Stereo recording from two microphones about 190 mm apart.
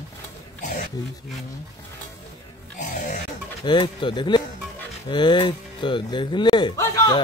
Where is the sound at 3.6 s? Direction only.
25° left (ahead or behind).